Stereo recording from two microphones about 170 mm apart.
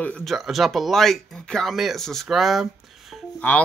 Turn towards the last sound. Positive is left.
turn(degrees=10)  # may be behind; listen again after turning